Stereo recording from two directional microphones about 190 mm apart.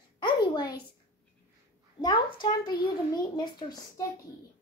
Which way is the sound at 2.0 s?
25° left (ahead or behind).